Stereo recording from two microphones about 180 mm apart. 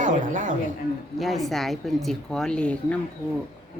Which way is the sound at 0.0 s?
45° right (ahead or behind).